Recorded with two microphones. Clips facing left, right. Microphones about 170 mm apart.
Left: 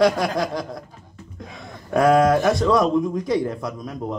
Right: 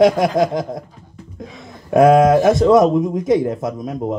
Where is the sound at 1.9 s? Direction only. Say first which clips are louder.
Right 5 dB; 20° right (ahead or behind).